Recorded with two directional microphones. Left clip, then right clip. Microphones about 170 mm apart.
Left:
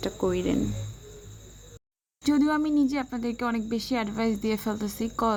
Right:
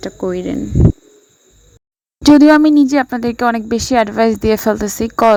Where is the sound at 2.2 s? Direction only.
60° right (ahead or behind).